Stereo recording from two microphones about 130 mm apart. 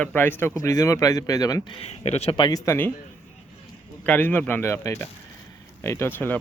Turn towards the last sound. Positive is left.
turn(degrees=15)  # may be behind; listen again after turning